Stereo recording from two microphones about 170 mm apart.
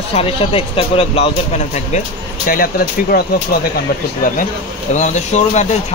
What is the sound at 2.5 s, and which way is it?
Speech, 55° left (ahead or behind).